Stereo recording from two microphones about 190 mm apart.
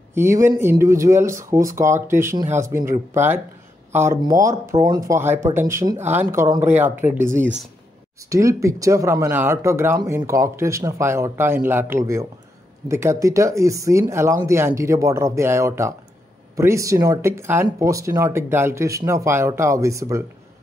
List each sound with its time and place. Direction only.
0.1 s speech: 15° right (ahead or behind)